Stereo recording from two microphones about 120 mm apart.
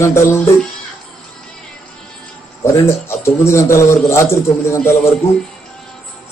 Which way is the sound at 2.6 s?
20° left (ahead or behind).